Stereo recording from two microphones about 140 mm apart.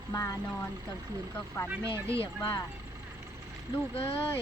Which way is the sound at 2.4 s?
25° left (ahead or behind).